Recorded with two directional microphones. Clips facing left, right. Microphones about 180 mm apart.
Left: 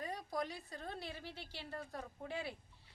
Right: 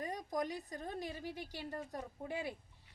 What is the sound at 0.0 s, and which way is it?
A woman's voice, 20° right (ahead or behind).